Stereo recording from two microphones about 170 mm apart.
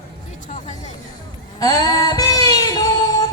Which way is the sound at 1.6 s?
20° left (ahead or behind).